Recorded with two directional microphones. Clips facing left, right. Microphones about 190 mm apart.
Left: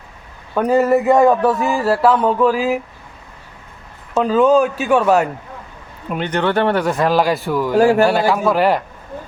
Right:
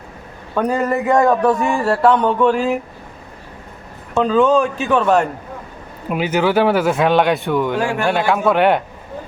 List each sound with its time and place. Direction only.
0.5 s speech: 5° left (ahead or behind)
4.1 s speech: 5° left (ahead or behind)
6.1 s speech: 5° right (ahead or behind)
7.8 s speech: 40° left (ahead or behind)
8.3 s speech: centre (ahead or behind)